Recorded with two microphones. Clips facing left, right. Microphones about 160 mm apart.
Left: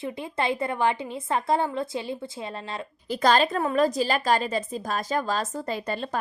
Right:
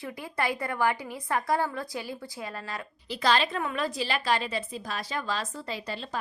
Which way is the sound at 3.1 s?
45° left (ahead or behind).